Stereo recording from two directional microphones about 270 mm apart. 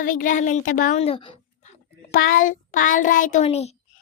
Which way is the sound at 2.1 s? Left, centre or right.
Left.